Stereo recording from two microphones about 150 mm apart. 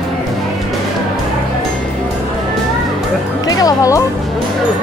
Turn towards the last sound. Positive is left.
turn(degrees=20)  # may be behind; listen again after turning